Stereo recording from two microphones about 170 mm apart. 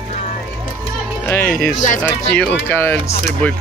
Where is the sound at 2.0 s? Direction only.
10° left (ahead or behind).